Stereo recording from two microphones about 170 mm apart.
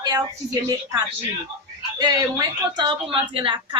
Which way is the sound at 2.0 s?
25° right (ahead or behind).